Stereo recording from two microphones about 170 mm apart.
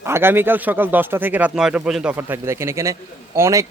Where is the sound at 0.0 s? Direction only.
15° right (ahead or behind).